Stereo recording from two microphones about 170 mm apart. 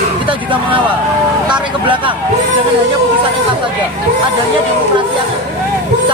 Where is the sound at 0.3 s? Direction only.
30° right (ahead or behind).